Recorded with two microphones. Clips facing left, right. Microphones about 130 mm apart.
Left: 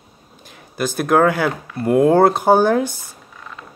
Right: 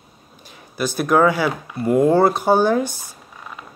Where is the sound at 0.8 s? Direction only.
50° left (ahead or behind).